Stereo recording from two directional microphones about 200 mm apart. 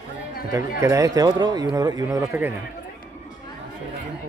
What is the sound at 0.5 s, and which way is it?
Speech, 15° right (ahead or behind).